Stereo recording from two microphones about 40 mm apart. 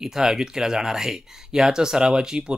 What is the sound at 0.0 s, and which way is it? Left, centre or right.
Speech, centre.